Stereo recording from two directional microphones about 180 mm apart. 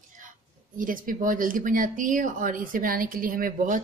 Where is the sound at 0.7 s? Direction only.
50° right (ahead or behind).